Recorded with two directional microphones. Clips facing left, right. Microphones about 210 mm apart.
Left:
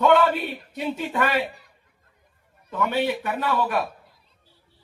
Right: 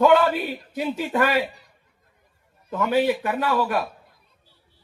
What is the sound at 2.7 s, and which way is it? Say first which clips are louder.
A man's voice: right 3 dB; centre (ahead or behind).